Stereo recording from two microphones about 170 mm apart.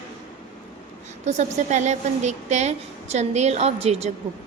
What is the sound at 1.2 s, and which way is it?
A woman's voice, 45° right (ahead or behind).